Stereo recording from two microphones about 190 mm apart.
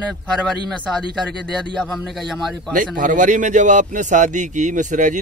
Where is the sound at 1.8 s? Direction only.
Centre (ahead or behind).